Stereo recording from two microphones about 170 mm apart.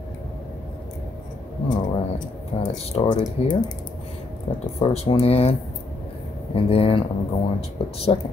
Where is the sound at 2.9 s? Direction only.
25° left (ahead or behind).